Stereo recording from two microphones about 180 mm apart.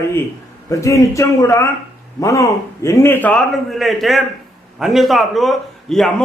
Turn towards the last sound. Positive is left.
turn(degrees=0)  # may be behind; listen again after turning